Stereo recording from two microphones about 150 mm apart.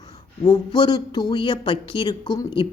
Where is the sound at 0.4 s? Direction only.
30° left (ahead or behind).